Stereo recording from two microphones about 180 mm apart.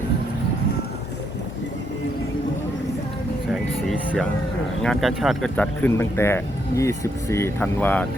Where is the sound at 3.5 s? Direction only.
Centre (ahead or behind).